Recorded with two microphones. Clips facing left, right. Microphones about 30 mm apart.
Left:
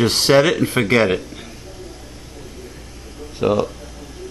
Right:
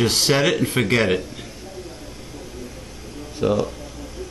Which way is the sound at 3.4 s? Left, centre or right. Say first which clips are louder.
Left 3 dB; centre.